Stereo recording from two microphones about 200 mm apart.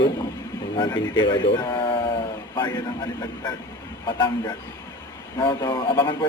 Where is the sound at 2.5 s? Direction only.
20° left (ahead or behind).